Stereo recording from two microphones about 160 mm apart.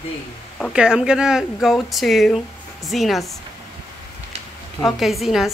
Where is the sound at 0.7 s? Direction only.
5° right (ahead or behind).